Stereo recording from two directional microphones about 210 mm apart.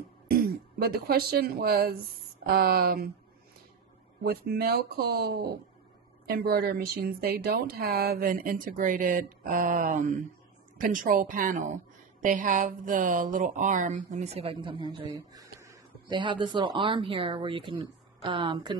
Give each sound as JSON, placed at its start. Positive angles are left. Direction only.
{"t": 0.3, "sound": "speech", "side_deg": -45}
{"t": 4.2, "sound": "speech", "side_deg": -45}